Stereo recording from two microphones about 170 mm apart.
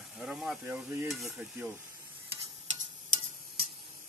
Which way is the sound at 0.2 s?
5° right (ahead or behind).